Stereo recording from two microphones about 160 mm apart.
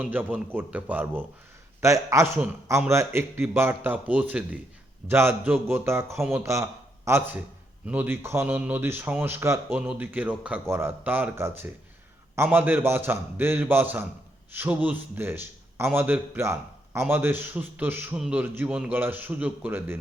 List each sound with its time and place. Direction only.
0.0 s a man's voice: 10° right (ahead or behind)